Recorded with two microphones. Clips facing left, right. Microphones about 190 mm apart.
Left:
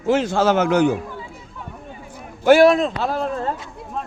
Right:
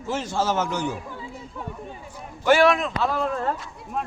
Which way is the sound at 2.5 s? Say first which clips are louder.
Left 6 dB; 35° left (ahead or behind).